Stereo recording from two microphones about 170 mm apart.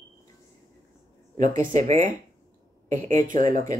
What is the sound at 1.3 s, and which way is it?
Speech, 50° right (ahead or behind).